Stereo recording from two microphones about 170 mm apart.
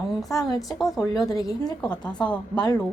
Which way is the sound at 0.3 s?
20° left (ahead or behind).